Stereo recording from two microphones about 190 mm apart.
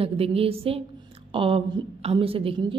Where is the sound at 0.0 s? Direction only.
30° right (ahead or behind).